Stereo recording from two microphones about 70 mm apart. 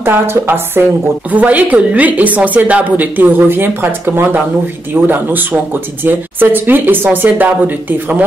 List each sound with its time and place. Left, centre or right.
0.0 s a woman's voice: right